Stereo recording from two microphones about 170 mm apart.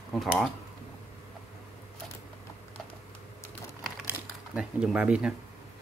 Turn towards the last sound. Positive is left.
turn(degrees=-5)  # may be behind; listen again after turning